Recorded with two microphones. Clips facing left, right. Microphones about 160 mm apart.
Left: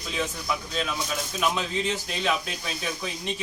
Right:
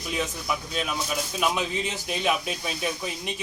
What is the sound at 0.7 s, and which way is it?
Speech, 10° right (ahead or behind).